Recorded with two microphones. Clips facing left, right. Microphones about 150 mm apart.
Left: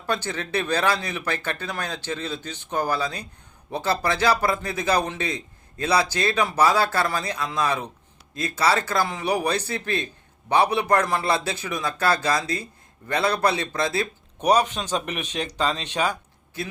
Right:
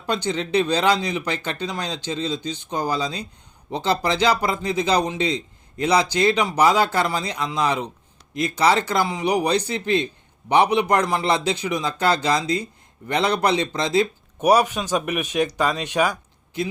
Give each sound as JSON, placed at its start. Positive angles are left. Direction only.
{"t": 0.1, "sound": "a man's voice", "side_deg": -20}
{"t": 14.4, "sound": "speech", "side_deg": -10}